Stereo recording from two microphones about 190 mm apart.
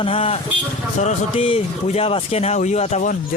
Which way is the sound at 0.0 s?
30° left (ahead or behind).